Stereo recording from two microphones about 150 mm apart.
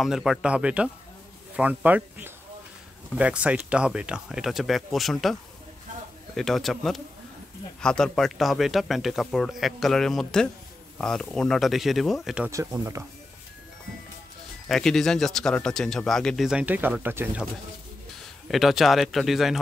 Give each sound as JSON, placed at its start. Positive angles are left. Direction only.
{"t": 0.0, "sound": "speech", "side_deg": 0}
{"t": 12.4, "sound": "speech", "side_deg": -20}
{"t": 14.7, "sound": "speech", "side_deg": 5}
{"t": 18.5, "sound": "speech", "side_deg": 0}